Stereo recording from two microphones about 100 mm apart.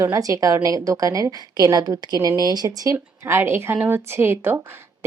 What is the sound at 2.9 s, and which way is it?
A woman's voice, 25° right (ahead or behind).